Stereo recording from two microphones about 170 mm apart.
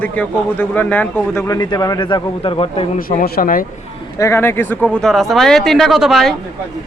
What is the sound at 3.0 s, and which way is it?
Speech, 55° left (ahead or behind).